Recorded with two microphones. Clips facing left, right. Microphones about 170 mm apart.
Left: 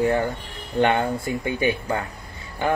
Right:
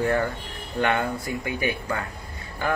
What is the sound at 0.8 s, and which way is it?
Speech, 30° left (ahead or behind).